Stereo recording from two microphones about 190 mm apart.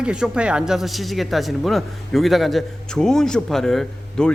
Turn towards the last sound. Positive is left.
turn(degrees=5)  # may be behind; listen again after turning